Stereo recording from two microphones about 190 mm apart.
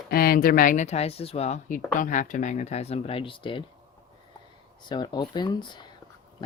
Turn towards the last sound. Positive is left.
turn(degrees=25)  # may be behind; listen again after turning